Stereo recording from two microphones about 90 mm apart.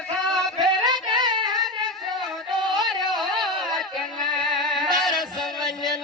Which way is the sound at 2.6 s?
55° right (ahead or behind).